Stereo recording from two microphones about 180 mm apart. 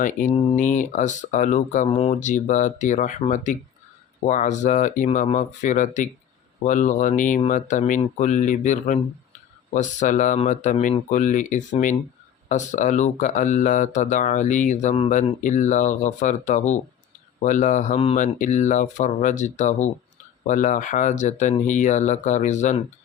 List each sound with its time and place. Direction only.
0.0 s speech: 45° left (ahead or behind)